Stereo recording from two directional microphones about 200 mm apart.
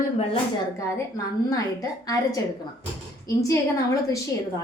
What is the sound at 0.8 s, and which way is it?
A woman's voice, 15° left (ahead or behind).